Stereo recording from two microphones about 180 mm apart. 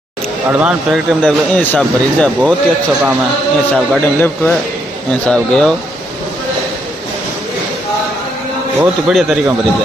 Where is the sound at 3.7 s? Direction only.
5° left (ahead or behind).